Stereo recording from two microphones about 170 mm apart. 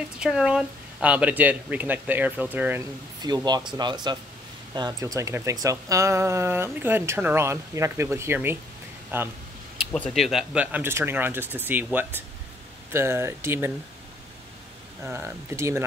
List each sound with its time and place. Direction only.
0.2 s speech: 5° right (ahead or behind)
3.2 s speech: 25° right (ahead or behind)
9.9 s speech: 5° left (ahead or behind); by 13.7 s 15° right (ahead or behind)
15.0 s speech: 15° right (ahead or behind)